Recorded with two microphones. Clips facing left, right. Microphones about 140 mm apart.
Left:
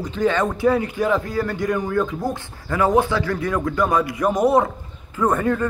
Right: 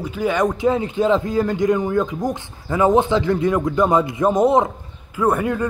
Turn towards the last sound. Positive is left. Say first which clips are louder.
# right 1 dB
turn(degrees=-10)  # may be behind; listen again after turning